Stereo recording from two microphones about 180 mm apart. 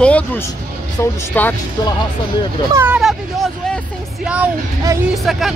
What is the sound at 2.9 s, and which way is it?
Speech, centre (ahead or behind).